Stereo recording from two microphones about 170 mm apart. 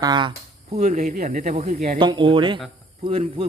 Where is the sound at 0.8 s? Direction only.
45° right (ahead or behind).